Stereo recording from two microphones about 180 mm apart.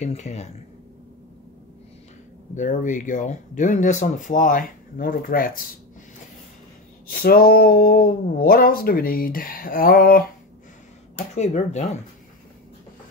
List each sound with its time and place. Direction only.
0.0 s speech: 40° left (ahead or behind)
2.5 s speech: 45° left (ahead or behind)
7.1 s speech: 55° left (ahead or behind)
11.3 s speech: 40° left (ahead or behind)